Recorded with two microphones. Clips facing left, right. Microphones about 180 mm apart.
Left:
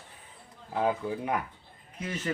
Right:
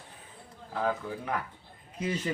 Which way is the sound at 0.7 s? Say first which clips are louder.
Left 3 dB; 20° left (ahead or behind).